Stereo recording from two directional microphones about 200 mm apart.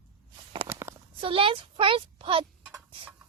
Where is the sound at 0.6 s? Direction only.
15° right (ahead or behind).